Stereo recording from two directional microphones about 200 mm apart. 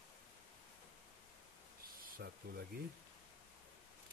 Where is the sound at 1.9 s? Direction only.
45° right (ahead or behind).